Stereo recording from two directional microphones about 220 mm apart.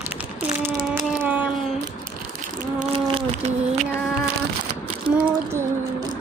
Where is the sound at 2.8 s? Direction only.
25° right (ahead or behind).